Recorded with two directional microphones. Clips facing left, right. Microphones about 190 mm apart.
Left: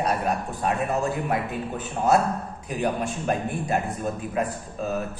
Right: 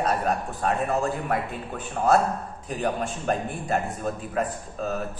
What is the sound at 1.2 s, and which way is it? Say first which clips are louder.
A man's voice: left 1 dB; 20° left (ahead or behind).